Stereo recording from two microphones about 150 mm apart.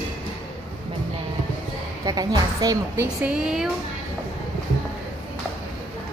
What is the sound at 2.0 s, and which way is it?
A woman's voice, 25° right (ahead or behind).